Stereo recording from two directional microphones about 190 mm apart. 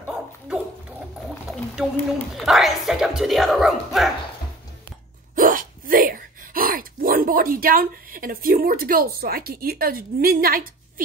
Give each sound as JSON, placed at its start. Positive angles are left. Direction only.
{"t": 1.5, "sound": "a woman's voice", "side_deg": 0}
{"t": 5.3, "sound": "hiccup", "side_deg": -45}